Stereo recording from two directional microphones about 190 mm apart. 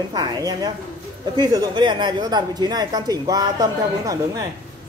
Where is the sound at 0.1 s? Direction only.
20° right (ahead or behind).